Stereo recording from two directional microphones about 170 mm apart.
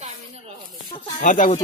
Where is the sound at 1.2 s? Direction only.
50° left (ahead or behind).